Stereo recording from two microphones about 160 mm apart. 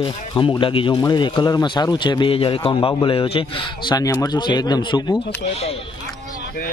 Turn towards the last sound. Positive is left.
turn(degrees=25)  # may be behind; listen again after turning